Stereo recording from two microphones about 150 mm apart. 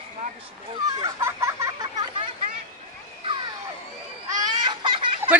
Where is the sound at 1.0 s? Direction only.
20° right (ahead or behind).